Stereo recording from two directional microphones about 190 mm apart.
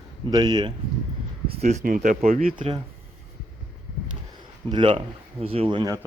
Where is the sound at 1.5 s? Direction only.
35° right (ahead or behind).